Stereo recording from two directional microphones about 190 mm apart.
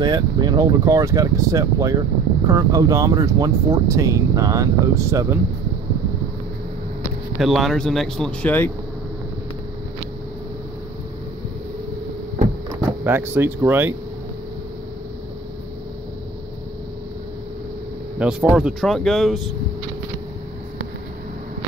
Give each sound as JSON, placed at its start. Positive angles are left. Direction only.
{"t": 0.0, "sound": "speech", "side_deg": -20}
{"t": 7.3, "sound": "speech", "side_deg": 0}
{"t": 13.0, "sound": "speech", "side_deg": -10}
{"t": 18.2, "sound": "speech", "side_deg": -5}